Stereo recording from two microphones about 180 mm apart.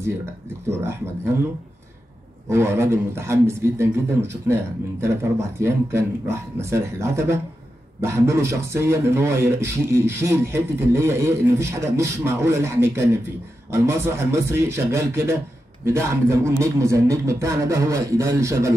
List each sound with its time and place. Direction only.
0.7 s speech: 15° right (ahead or behind)
2.5 s speech: 15° right (ahead or behind)